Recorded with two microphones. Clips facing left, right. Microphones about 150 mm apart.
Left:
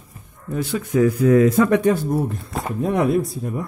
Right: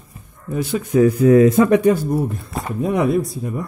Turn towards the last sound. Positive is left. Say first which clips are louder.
# right 1 dB
turn(degrees=0)  # may be behind; listen again after turning